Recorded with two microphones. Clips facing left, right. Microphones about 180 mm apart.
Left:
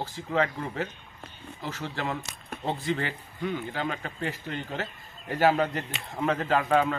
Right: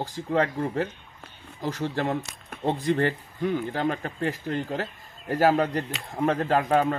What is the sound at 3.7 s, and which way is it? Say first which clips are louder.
Speech: right 5 dB; 45° right (ahead or behind).